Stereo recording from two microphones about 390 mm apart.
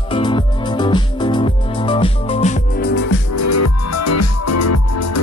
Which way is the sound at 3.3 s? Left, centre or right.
Left.